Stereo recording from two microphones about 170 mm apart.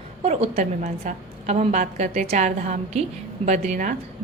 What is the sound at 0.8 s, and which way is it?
Speech, 55° right (ahead or behind).